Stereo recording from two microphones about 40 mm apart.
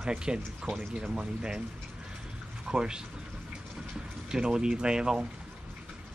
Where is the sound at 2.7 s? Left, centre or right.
Right.